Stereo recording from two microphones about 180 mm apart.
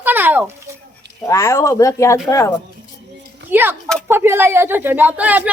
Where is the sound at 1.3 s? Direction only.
15° left (ahead or behind).